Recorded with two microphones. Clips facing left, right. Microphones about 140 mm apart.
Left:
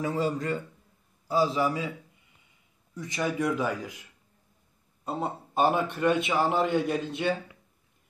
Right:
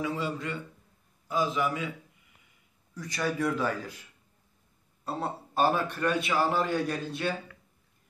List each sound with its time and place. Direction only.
0.0 s a man's voice: 40° left (ahead or behind)
2.9 s a man's voice: 20° left (ahead or behind)
5.0 s a man's voice: 20° left (ahead or behind)